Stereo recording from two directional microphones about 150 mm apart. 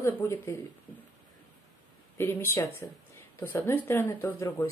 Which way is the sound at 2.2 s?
15° left (ahead or behind).